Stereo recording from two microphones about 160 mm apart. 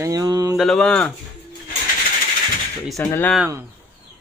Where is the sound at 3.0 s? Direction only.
10° left (ahead or behind).